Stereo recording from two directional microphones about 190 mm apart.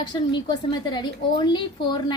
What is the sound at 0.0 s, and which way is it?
A woman's voice, 25° left (ahead or behind).